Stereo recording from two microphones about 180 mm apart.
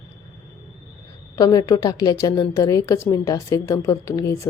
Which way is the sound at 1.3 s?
20° left (ahead or behind).